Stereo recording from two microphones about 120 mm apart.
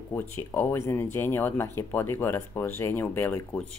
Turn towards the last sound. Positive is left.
turn(degrees=15)  # may be behind; listen again after turning